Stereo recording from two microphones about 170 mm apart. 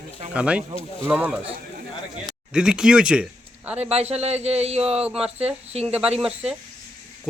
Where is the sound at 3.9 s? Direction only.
40° right (ahead or behind).